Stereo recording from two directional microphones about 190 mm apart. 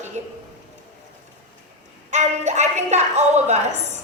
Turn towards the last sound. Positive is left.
turn(degrees=-35)  # may be behind; listen again after turning